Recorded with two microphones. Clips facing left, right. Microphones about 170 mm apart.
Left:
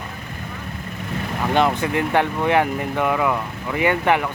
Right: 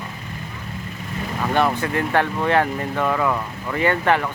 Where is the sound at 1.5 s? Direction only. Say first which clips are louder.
Left 1 dB; 20° left (ahead or behind).